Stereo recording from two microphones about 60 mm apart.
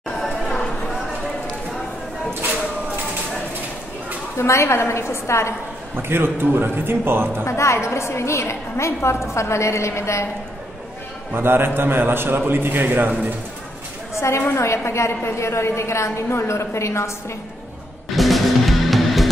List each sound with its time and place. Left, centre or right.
4.4 s a woman's voice: left
5.9 s a man's voice: right
7.4 s a woman's voice: left
11.3 s a man's voice: right
14.5 s a woman's voice: left
18.1 s music: centre